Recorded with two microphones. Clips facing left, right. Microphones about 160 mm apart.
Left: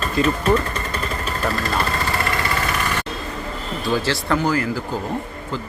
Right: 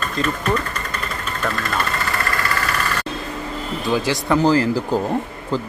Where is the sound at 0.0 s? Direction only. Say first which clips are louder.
Left 3 dB; 30° left (ahead or behind).